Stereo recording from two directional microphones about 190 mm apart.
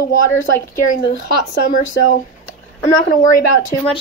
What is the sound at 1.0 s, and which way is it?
Speech, 55° left (ahead or behind).